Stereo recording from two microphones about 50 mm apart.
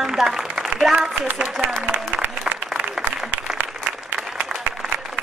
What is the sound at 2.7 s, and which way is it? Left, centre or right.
Applause, right.